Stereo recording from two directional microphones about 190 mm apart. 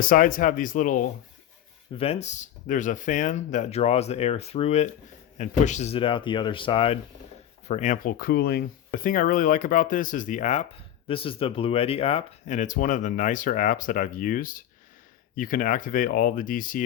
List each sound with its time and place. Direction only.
0.0 s speech: 45° left (ahead or behind)
1.9 s speech: 30° left (ahead or behind); by 8.6 s 55° left (ahead or behind)
8.9 s speech: 45° left (ahead or behind)